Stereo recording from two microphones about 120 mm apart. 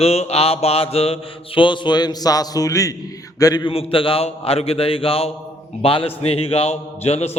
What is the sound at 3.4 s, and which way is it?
Speech, 30° left (ahead or behind).